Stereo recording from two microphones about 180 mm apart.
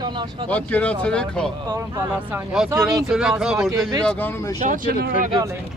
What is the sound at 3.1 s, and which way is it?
Speech, 5° right (ahead or behind).